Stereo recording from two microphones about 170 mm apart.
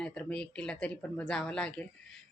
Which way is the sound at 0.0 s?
5° left (ahead or behind).